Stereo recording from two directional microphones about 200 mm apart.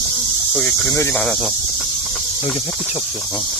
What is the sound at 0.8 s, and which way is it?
Speech, 15° left (ahead or behind).